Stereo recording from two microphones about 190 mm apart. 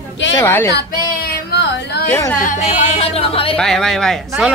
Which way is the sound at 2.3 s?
40° left (ahead or behind).